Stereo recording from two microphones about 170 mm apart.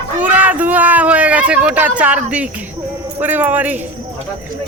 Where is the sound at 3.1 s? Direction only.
10° right (ahead or behind).